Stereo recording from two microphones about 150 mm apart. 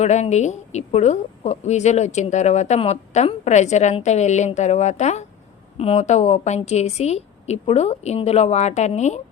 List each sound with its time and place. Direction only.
0.0 s a woman's voice: 50° left (ahead or behind)